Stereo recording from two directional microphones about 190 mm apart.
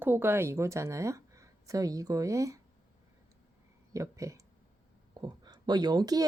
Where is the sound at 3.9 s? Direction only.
15° right (ahead or behind).